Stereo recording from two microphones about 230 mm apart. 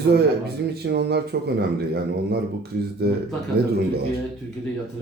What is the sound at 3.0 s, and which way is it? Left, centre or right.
Speech, right.